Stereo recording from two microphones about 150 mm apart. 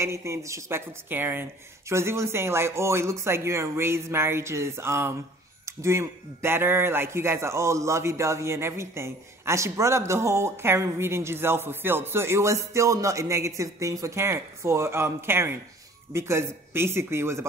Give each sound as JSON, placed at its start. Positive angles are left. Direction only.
{"t": 0.0, "sound": "a man's voice", "side_deg": -20}